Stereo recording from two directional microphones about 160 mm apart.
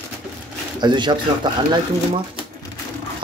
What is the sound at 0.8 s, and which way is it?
Speech, 30° right (ahead or behind).